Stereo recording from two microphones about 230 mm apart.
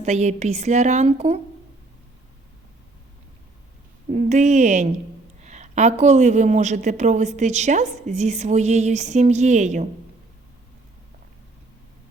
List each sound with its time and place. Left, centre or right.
0.0 s speech: right
4.1 s a woman's voice: right